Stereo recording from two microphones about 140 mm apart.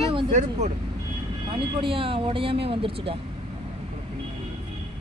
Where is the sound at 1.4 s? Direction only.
35° right (ahead or behind).